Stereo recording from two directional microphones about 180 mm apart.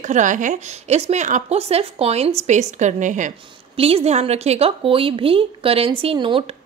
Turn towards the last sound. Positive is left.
turn(degrees=-30)  # may be behind; listen again after turning